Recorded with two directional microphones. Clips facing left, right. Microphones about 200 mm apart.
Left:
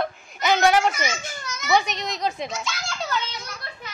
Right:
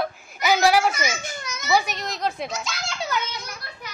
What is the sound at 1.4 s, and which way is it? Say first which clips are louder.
A child's voice: left 1 dB; 10° right (ahead or behind).